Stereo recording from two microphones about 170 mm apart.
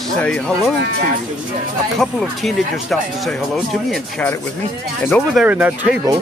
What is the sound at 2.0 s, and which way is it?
Speech, centre (ahead or behind).